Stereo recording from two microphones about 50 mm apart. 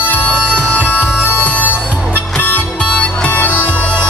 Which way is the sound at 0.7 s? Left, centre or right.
Left.